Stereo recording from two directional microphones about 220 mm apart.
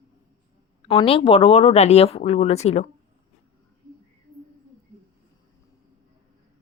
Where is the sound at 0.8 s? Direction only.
25° left (ahead or behind).